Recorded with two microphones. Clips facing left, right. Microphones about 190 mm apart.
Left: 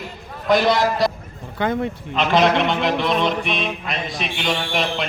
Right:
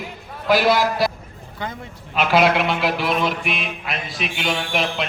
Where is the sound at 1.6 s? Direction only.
65° left (ahead or behind).